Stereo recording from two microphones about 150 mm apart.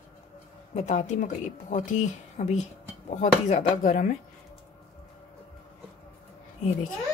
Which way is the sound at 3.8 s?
65° left (ahead or behind).